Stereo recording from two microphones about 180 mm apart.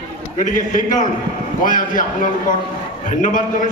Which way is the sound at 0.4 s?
45° left (ahead or behind).